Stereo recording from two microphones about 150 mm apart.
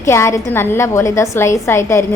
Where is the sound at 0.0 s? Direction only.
20° left (ahead or behind).